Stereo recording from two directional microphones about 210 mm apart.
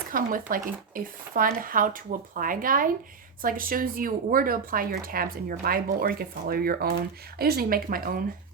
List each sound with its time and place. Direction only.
0.1 s speech: 40° right (ahead or behind)